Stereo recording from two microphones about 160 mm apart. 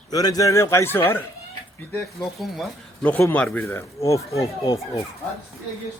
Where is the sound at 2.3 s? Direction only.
Centre (ahead or behind); by 5.1 s 20° left (ahead or behind).